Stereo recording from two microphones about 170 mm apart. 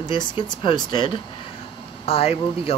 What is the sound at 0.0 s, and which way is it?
Speech, 25° left (ahead or behind).